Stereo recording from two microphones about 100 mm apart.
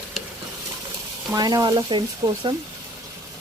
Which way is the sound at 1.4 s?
40° right (ahead or behind).